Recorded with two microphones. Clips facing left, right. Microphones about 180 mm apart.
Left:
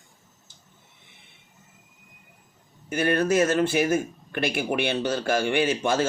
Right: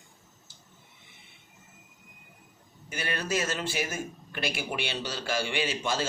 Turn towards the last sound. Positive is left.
turn(degrees=55)  # may be behind; listen again after turning